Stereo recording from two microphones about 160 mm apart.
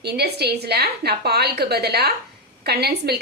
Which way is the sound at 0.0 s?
90° right.